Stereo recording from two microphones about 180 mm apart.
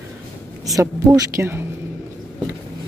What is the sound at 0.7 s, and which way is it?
Speech, 15° right (ahead or behind).